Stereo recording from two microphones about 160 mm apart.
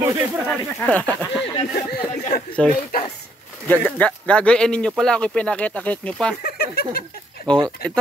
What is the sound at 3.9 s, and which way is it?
Speech, 5° left (ahead or behind).